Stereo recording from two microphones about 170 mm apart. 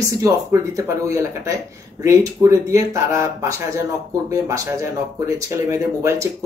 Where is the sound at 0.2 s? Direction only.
15° right (ahead or behind).